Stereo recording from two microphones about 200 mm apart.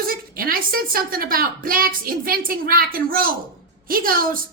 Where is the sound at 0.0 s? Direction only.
45° right (ahead or behind).